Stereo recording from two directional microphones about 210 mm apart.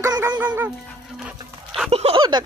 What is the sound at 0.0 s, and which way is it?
Music, 15° right (ahead or behind).